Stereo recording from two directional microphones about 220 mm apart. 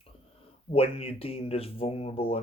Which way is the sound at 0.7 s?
25° left (ahead or behind).